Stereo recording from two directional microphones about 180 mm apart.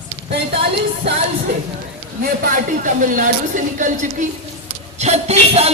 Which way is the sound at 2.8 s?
45° right (ahead or behind).